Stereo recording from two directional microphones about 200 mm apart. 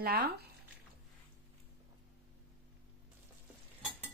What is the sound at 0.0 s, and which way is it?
Speech, 50° right (ahead or behind).